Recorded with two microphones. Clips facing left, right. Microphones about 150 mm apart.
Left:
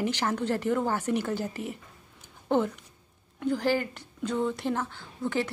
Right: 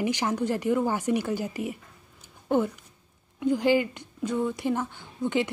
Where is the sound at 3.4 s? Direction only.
15° right (ahead or behind).